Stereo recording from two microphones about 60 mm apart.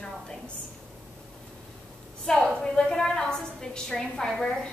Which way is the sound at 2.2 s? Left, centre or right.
Centre.